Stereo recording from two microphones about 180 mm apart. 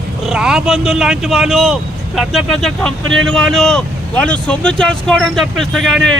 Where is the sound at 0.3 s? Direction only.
5° right (ahead or behind).